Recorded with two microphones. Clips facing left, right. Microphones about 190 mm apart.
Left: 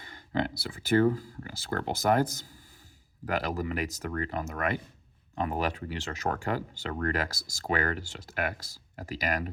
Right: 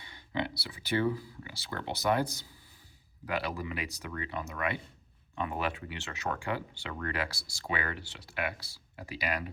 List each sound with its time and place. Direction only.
0.0 s speech: 45° left (ahead or behind)